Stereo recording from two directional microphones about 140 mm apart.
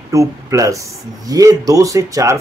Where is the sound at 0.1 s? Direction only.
25° right (ahead or behind).